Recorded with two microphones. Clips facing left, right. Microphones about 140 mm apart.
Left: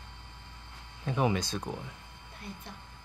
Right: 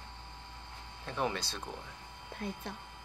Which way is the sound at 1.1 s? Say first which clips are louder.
Left 6 dB; 10° left (ahead or behind).